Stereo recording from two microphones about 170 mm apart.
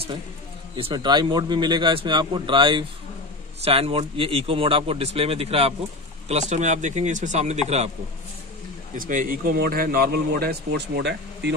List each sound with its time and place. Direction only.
0.7 s a man's voice: 30° right (ahead or behind)
8.9 s speech: 55° right (ahead or behind); by 11.5 s 80° right